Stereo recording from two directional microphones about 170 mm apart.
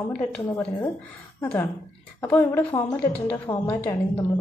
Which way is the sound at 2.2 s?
15° left (ahead or behind).